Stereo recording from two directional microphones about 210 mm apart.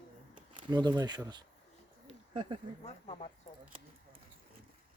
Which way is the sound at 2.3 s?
25° right (ahead or behind).